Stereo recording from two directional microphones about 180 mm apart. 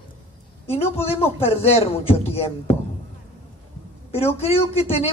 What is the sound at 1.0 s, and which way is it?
Speech, 35° left (ahead or behind).